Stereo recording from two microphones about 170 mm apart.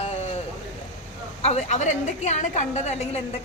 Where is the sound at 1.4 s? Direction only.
40° left (ahead or behind).